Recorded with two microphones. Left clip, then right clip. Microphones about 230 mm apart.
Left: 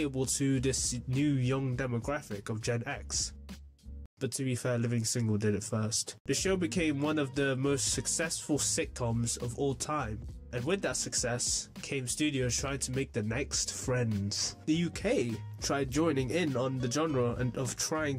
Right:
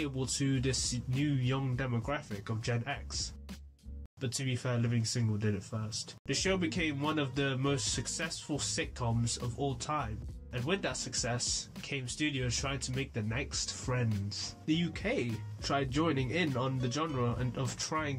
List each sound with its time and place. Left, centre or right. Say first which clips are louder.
0.0 s speech: left 3 dB; left